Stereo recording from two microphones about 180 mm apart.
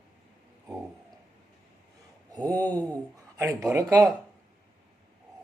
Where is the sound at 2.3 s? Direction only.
20° right (ahead or behind).